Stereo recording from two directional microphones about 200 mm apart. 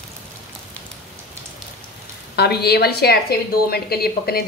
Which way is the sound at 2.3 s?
55° left (ahead or behind).